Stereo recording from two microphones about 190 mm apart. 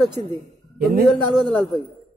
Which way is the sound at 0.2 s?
25° right (ahead or behind).